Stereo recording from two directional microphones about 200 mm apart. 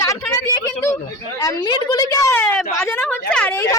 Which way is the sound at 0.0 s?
15° left (ahead or behind).